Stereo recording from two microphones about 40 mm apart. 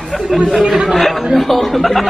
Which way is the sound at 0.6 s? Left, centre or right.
Centre.